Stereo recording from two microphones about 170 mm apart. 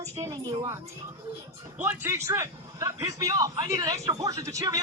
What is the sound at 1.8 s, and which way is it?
A man's voice, 15° right (ahead or behind).